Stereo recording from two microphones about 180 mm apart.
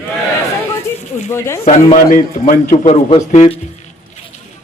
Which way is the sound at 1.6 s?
45° left (ahead or behind).